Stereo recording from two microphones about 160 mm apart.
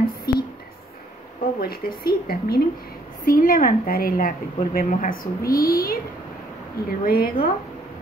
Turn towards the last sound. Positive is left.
turn(degrees=65)  # may be behind; listen again after turning